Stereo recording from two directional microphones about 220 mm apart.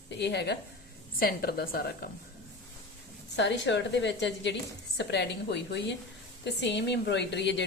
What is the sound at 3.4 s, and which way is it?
Speech, 55° left (ahead or behind).